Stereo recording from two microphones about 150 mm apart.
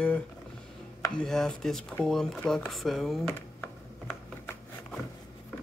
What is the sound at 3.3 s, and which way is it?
Computer keyboard, 15° left (ahead or behind).